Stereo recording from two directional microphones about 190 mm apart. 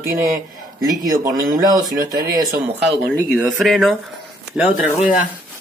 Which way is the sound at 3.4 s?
Centre (ahead or behind).